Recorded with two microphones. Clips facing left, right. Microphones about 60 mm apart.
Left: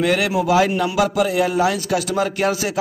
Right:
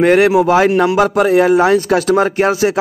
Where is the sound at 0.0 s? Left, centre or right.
Right.